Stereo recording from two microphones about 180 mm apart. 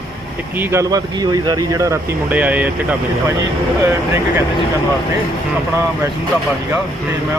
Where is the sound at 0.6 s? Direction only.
15° right (ahead or behind).